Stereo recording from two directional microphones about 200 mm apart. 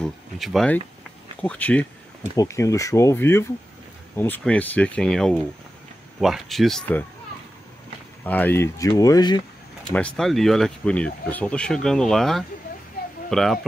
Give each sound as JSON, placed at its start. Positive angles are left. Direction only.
{"t": 0.0, "sound": "speech", "side_deg": 0}
{"t": 8.3, "sound": "speech", "side_deg": 10}
{"t": 9.9, "sound": "speech", "side_deg": 5}